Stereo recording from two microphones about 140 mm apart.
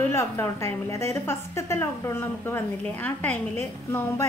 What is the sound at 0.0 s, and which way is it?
A woman's voice, 15° left (ahead or behind).